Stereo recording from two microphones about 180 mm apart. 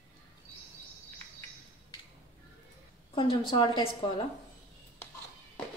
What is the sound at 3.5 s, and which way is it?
Speech, 30° left (ahead or behind).